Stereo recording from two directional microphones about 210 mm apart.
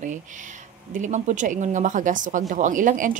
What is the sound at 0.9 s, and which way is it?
Speech, 35° right (ahead or behind).